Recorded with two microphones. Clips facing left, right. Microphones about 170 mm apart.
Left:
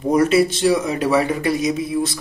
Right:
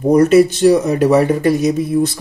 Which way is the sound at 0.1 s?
40° right (ahead or behind).